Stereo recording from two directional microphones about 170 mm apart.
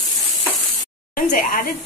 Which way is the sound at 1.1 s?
55° left (ahead or behind).